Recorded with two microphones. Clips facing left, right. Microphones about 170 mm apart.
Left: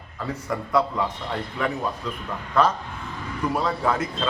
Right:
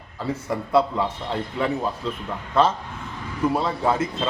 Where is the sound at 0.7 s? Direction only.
30° right (ahead or behind).